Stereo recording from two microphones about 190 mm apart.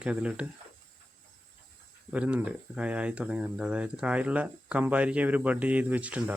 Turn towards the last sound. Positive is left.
turn(degrees=-5)  # may be behind; listen again after turning